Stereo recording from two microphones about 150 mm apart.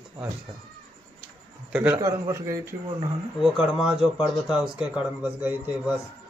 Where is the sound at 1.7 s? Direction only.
10° right (ahead or behind).